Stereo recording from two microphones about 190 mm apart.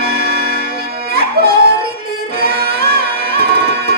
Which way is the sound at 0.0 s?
55° right (ahead or behind).